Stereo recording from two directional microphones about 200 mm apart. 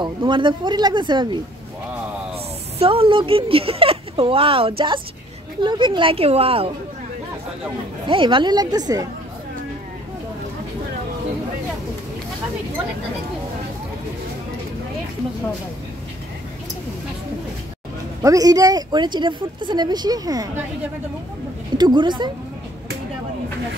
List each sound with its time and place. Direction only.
0.0 s speech: 25° right (ahead or behind)
2.8 s speech: 25° right (ahead or behind)
8.1 s speech: 25° right (ahead or behind)
18.2 s speech: 15° right (ahead or behind)
21.7 s speech: 20° right (ahead or behind)